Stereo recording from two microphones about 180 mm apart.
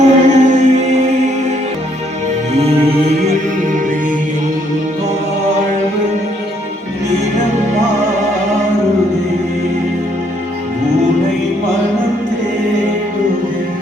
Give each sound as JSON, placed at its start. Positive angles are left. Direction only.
{"t": 0.0, "sound": "music", "side_deg": -40}
{"t": 2.5, "sound": "music", "side_deg": -35}